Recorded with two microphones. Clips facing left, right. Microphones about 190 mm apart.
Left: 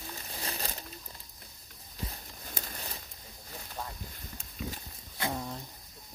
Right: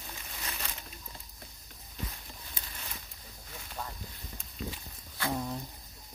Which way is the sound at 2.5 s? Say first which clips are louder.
Left 7 dB; 45° left (ahead or behind).